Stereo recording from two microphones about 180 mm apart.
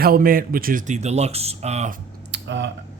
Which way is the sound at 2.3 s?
80° right.